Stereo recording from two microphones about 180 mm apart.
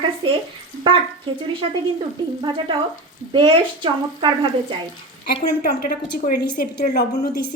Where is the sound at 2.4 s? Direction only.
30° right (ahead or behind).